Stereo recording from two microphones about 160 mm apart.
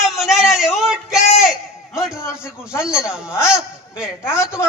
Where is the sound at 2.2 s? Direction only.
15° left (ahead or behind).